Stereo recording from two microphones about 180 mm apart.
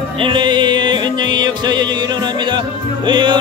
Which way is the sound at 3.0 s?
25° right (ahead or behind).